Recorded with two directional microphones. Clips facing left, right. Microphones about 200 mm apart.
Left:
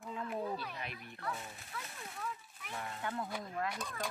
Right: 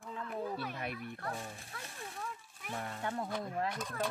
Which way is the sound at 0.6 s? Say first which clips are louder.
Right 5 dB; 50° right (ahead or behind).